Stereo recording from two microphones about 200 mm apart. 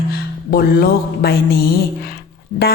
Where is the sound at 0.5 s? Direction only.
50° left (ahead or behind).